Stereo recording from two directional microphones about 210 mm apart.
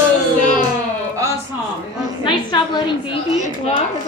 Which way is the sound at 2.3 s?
20° left (ahead or behind).